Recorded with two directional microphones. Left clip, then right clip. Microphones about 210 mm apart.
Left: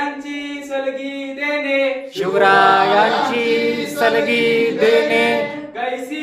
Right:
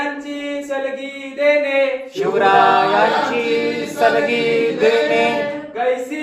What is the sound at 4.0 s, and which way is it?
Choir, 25° left (ahead or behind).